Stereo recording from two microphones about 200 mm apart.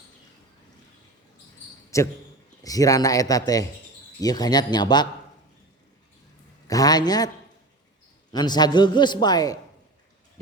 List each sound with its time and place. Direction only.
1.9 s a man's voice: 15° left (ahead or behind)
6.7 s a man's voice: 20° left (ahead or behind)
8.3 s a man's voice: 20° left (ahead or behind)